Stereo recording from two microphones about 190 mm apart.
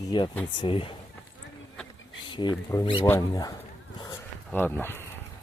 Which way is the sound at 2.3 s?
25° left (ahead or behind).